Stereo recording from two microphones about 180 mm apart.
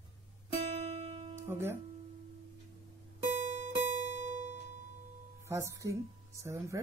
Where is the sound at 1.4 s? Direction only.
15° right (ahead or behind).